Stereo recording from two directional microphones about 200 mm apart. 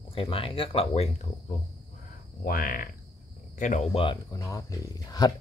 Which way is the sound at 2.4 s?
45° left (ahead or behind).